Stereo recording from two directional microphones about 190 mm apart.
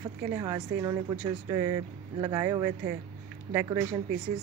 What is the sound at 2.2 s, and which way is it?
Speech, 25° right (ahead or behind).